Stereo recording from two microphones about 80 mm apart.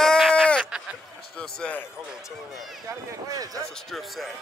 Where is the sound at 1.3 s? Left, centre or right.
Centre.